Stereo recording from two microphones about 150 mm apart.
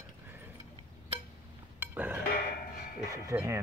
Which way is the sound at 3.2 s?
20° right (ahead or behind).